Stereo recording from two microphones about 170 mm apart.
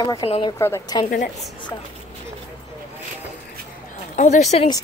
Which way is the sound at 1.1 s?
50° left (ahead or behind).